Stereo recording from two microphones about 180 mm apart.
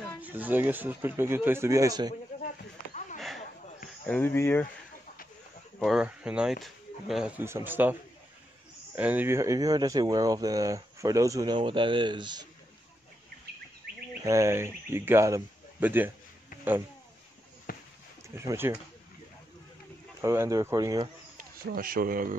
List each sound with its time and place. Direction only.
0.2 s speech: 10° right (ahead or behind)
4.0 s speech: 10° left (ahead or behind)
5.8 s speech: 5° right (ahead or behind); by 12.4 s 25° right (ahead or behind)
13.9 s insect: 60° right (ahead or behind)
14.2 s speech: 15° right (ahead or behind)
17.7 s a sound: 50° left (ahead or behind)
18.3 s speech: 15° right (ahead or behind)
20.2 s speech: 15° right (ahead or behind)
21.4 s speech: 55° right (ahead or behind)